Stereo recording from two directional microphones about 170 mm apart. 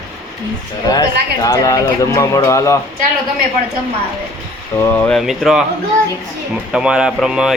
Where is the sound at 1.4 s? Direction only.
20° left (ahead or behind).